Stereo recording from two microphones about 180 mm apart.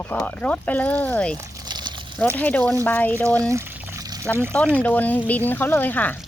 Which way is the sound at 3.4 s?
15° right (ahead or behind).